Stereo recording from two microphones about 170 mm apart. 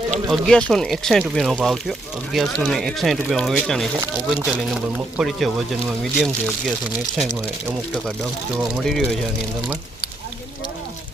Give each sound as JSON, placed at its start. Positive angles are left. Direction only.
{"t": 0.3, "sound": "speech", "side_deg": 5}
{"t": 8.8, "sound": "speech", "side_deg": 5}